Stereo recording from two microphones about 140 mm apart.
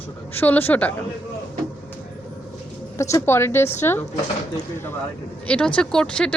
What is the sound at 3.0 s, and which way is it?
A woman's voice, 20° left (ahead or behind).